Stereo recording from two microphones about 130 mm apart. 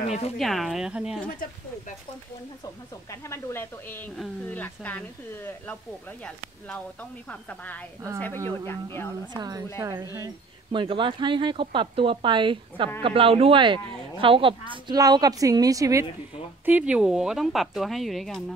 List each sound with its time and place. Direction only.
0.0 s speech: 60° left (ahead or behind)
0.4 s speech: centre (ahead or behind)
1.4 s speech: 90° left
3.1 s a woman's voice: 20° left (ahead or behind)
9.3 s a woman's voice: 30° right (ahead or behind)
10.7 s speech: 40° right (ahead or behind)
15.0 s a woman's voice: 30° right (ahead or behind)
16.6 s speech: 10° right (ahead or behind)